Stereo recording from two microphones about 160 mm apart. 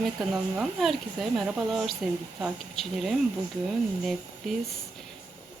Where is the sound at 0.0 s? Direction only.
Centre (ahead or behind).